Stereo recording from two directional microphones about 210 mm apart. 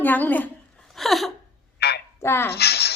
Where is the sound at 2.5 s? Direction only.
50° left (ahead or behind).